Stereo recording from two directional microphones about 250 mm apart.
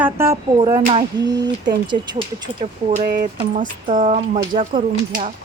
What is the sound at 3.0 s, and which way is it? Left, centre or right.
Speech, right.